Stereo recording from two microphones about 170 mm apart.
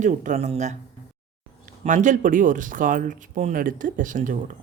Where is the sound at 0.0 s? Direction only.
45° right (ahead or behind).